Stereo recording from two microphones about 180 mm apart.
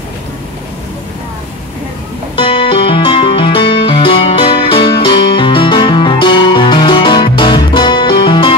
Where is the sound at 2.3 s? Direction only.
30° left (ahead or behind).